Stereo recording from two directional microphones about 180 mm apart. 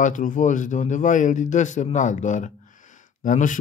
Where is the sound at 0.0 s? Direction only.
45° left (ahead or behind).